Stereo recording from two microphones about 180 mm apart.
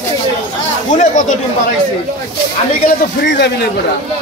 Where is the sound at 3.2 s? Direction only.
70° left (ahead or behind).